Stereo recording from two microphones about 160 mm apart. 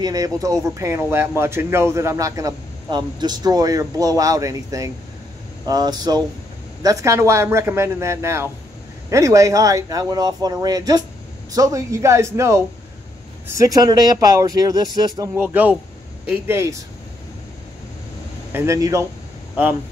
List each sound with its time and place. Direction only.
0.0 s a man's voice: 25° right (ahead or behind)
15.3 s a man's voice: 10° right (ahead or behind)
18.5 s speech: 20° right (ahead or behind)